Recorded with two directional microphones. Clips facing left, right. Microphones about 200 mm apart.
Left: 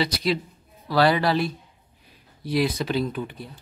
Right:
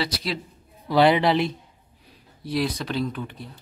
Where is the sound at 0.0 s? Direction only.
Centre (ahead or behind).